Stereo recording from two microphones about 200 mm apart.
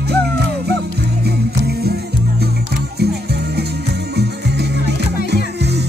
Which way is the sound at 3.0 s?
55° right (ahead or behind).